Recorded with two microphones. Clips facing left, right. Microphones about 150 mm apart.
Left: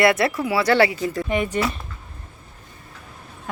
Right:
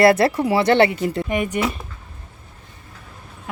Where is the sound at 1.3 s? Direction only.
15° right (ahead or behind).